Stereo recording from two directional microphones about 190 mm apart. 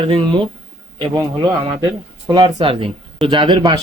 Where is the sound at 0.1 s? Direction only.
25° right (ahead or behind).